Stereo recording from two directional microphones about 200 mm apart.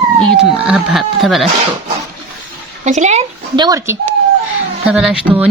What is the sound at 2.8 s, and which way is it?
Speech, 35° right (ahead or behind).